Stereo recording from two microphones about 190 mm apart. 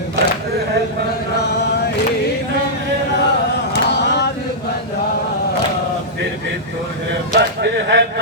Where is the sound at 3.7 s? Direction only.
65° left (ahead or behind).